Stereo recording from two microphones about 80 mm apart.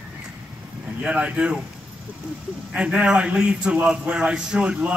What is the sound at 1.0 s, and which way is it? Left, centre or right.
Speech, centre.